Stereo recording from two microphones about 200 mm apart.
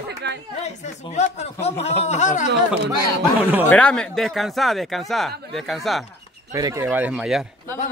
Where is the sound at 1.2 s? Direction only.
35° left (ahead or behind).